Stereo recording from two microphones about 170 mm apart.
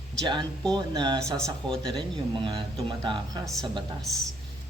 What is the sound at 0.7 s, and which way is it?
A woman's voice, 25° right (ahead or behind).